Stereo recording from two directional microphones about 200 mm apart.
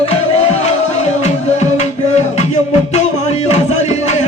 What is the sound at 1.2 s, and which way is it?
Music, 35° left (ahead or behind).